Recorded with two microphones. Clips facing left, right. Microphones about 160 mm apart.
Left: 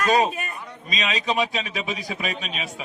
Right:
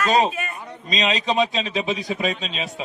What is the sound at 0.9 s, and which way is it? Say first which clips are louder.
A man's voice: right 3 dB; 30° right (ahead or behind).